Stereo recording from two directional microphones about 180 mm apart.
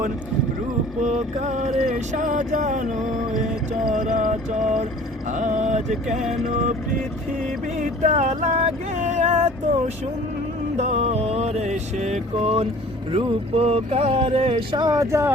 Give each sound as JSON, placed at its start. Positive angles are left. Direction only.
{"t": 1.0, "sound": "a sound", "side_deg": -40}
{"t": 7.8, "sound": "speech", "side_deg": -40}
{"t": 10.8, "sound": "speech", "side_deg": -35}